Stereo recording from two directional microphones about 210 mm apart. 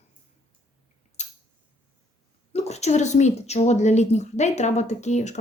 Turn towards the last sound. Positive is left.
turn(degrees=35)  # may be behind; listen again after turning